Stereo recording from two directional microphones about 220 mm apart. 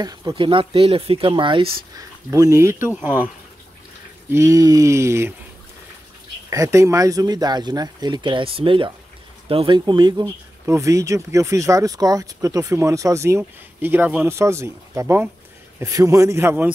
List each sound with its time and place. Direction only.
0.0 s speech: 15° right (ahead or behind)
4.3 s speech: 15° right (ahead or behind)
6.5 s speech: 15° right (ahead or behind)